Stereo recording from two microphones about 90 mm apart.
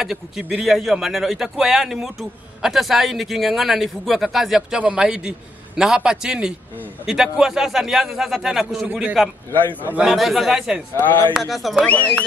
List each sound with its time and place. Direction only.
0.0 s a man's voice: 5° right (ahead or behind)
9.5 s a man's voice: 20° left (ahead or behind)
9.9 s a man's voice: 5° right (ahead or behind)
11.0 s a man's voice: 20° left (ahead or behind)
11.3 s a man's voice: centre (ahead or behind)
11.8 s speech: 15° left (ahead or behind)